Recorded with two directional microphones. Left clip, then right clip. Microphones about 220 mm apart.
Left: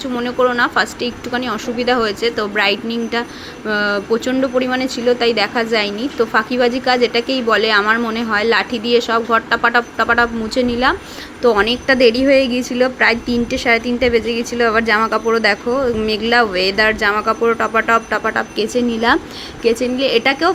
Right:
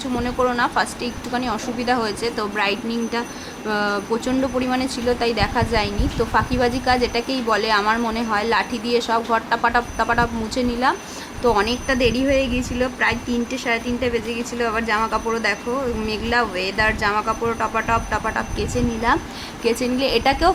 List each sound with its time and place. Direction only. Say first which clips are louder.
0.0 s a woman's voice: left 5 dB; 10° left (ahead or behind)
19.6 s a woman's voice: left 5 dB; 5° left (ahead or behind)